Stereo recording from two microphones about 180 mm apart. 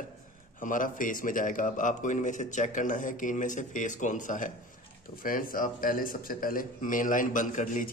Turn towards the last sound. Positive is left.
turn(degrees=45)  # may be behind; listen again after turning